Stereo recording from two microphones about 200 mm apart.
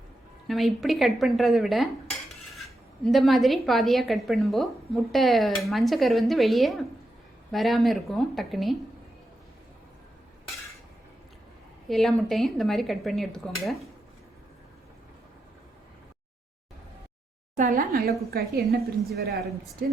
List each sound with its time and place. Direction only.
0.4 s speech: centre (ahead or behind)
11.9 s speech: centre (ahead or behind)
17.6 s a woman's voice: 40° right (ahead or behind)